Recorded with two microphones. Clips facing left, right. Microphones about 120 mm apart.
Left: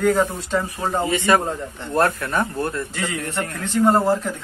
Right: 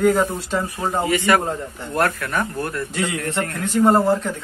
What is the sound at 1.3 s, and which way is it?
Speech, 25° left (ahead or behind).